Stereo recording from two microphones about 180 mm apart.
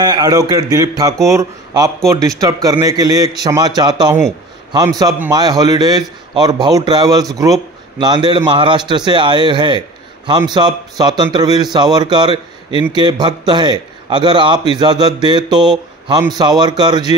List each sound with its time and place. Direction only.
0.0 s a man's voice: 20° right (ahead or behind)